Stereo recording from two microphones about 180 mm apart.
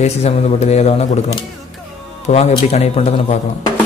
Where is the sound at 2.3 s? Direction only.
40° left (ahead or behind).